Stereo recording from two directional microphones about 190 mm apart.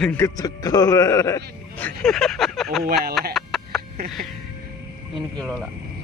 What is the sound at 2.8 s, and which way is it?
Speech, 55° right (ahead or behind).